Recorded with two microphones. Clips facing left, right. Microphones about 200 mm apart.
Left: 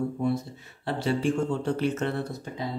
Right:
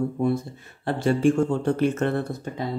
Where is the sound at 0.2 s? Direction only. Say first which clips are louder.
Right 3 dB; 50° right (ahead or behind).